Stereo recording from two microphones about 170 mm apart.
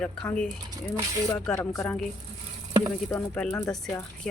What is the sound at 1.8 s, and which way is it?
Speech, 5° left (ahead or behind).